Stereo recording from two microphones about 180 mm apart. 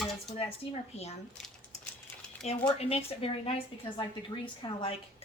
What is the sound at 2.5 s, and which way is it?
A woman's voice, 35° left (ahead or behind).